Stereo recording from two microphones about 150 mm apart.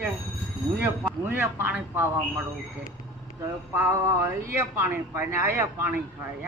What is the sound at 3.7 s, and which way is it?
Speech, 20° right (ahead or behind).